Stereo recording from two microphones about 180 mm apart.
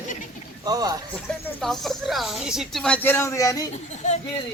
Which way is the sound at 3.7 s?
40° left (ahead or behind).